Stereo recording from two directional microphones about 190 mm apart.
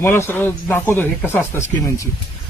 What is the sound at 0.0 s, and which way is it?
A man's voice, 10° left (ahead or behind).